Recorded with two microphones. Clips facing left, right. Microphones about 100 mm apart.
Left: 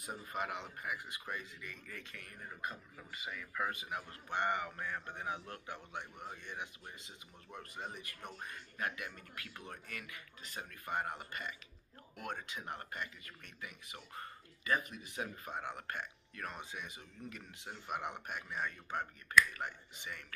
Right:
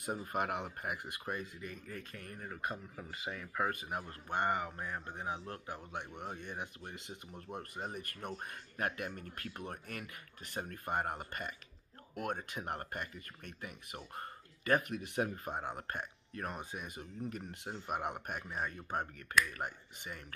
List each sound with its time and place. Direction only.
0.0 s speech: 50° right (ahead or behind)
1.2 s speech: 45° right (ahead or behind)
3.0 s speech: 30° right (ahead or behind)
3.6 s a man's voice: 45° right (ahead or behind)
6.2 s speech: 45° right (ahead or behind)
6.9 s speech: 65° right (ahead or behind)
7.4 s speech: 45° right (ahead or behind)
14.6 s speech: 60° right (ahead or behind); by 20.3 s 40° right (ahead or behind)